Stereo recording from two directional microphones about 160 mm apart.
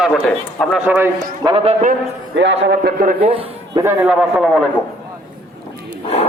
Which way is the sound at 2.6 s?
90° right.